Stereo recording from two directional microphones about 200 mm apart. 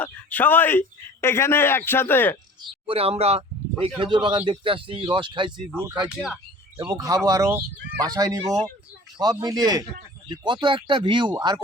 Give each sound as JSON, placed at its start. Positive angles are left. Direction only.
{"t": 0.0, "sound": "speech", "side_deg": 10}
{"t": 2.8, "sound": "speech", "side_deg": -30}
{"t": 6.1, "sound": "speech", "side_deg": 0}
{"t": 6.7, "sound": "speech", "side_deg": -20}